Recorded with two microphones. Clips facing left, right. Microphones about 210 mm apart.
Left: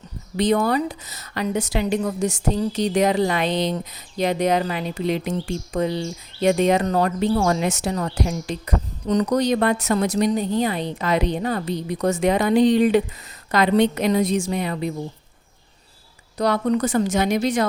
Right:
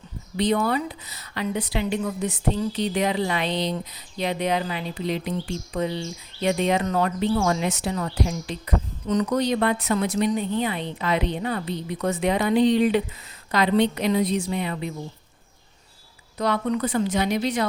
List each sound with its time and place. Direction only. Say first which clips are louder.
0.3 s a woman's voice: left 3 dB; 45° left (ahead or behind)
16.4 s a woman's voice: left 4 dB; 40° left (ahead or behind)